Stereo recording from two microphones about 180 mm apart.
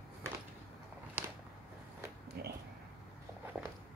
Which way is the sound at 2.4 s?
60° right (ahead or behind).